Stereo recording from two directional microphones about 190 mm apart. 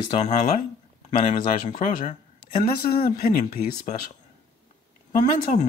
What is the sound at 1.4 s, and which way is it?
Speech, 45° left (ahead or behind).